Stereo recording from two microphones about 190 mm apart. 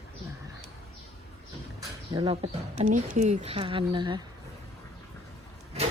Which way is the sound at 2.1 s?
30° right (ahead or behind).